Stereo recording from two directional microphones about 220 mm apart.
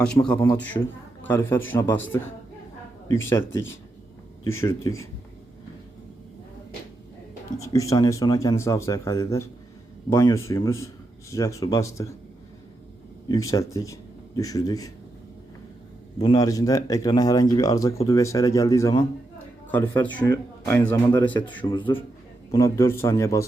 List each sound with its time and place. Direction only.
0.0 s speech: 5° left (ahead or behind)
3.1 s speech: 10° left (ahead or behind)
7.5 s speech: 15° left (ahead or behind)
13.2 s speech: 15° left (ahead or behind)
16.1 s a man's voice: 20° left (ahead or behind)